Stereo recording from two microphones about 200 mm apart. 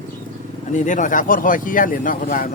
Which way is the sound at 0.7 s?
40° left (ahead or behind).